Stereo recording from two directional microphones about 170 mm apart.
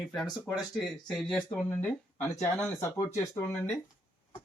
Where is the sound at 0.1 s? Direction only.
Centre (ahead or behind).